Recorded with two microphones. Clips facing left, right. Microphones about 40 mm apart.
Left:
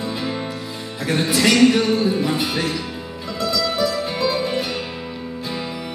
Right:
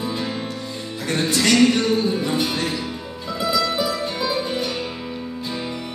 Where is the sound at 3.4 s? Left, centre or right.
Centre.